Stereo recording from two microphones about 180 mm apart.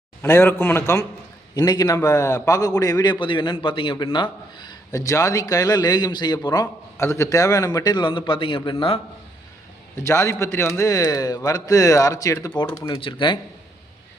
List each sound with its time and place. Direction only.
0.2 s a man's voice: 15° left (ahead or behind); by 9.0 s 30° left (ahead or behind)
10.0 s a man's voice: 15° left (ahead or behind)